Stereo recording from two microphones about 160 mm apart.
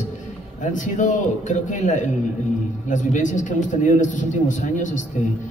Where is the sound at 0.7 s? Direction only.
50° left (ahead or behind).